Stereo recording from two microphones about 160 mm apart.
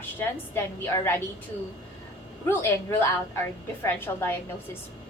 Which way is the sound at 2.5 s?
15° left (ahead or behind).